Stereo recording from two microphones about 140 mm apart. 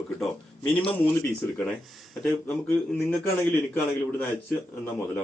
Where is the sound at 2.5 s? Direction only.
10° left (ahead or behind).